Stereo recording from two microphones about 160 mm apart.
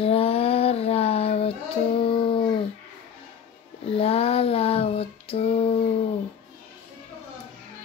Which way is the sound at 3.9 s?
40° left (ahead or behind).